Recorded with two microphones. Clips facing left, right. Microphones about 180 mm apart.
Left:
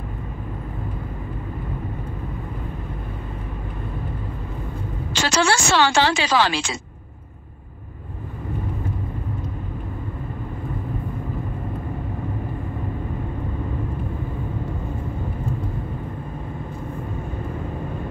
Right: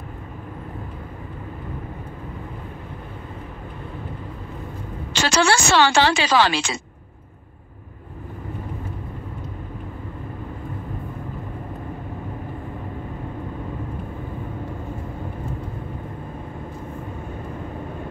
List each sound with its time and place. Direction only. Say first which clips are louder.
5.1 s a woman's voice: right 1 dB; 70° right (ahead or behind)